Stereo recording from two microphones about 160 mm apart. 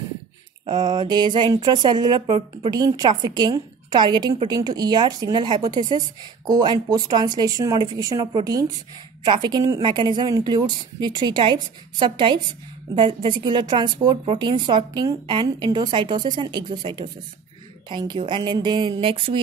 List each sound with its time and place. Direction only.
0.7 s speech: 25° right (ahead or behind)